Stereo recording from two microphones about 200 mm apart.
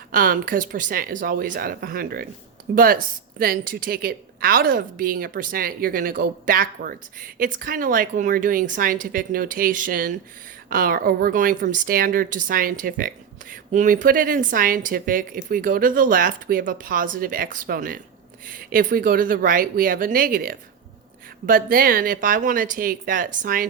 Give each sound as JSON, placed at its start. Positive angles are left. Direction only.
{"t": 0.1, "sound": "a woman's voice", "side_deg": -45}